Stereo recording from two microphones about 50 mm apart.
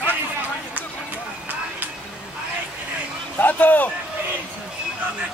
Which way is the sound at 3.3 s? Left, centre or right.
Left.